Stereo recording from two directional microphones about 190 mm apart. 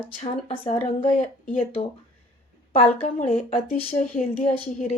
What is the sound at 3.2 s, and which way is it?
Speech, 35° left (ahead or behind).